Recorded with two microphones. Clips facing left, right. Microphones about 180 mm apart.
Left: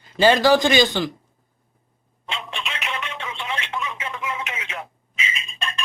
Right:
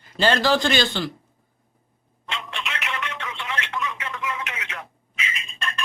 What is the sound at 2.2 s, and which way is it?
Telephone, 15° left (ahead or behind).